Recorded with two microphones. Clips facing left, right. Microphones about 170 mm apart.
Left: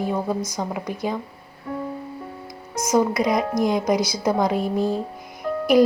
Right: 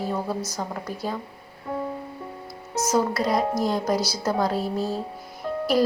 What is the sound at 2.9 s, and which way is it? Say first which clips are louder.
A woman's voice: left 4 dB; 15° left (ahead or behind).